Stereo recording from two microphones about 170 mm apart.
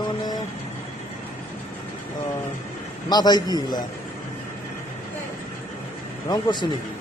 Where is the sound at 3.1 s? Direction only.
25° left (ahead or behind).